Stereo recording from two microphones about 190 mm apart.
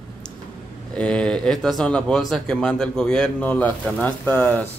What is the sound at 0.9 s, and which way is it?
Speech, 5° left (ahead or behind).